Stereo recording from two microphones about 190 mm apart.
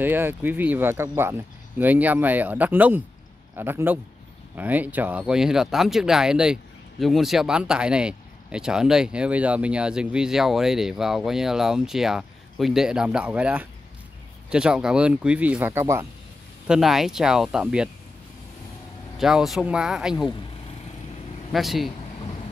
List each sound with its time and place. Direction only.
0.0 s speech: 10° right (ahead or behind)
16.6 s speech: 5° right (ahead or behind)
19.1 s speech: centre (ahead or behind)
21.5 s speech: centre (ahead or behind)